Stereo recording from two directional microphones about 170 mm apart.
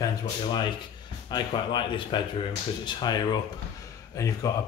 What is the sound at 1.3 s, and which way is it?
Speech, 25° left (ahead or behind).